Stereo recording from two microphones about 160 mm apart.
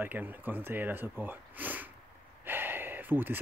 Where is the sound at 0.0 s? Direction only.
10° right (ahead or behind).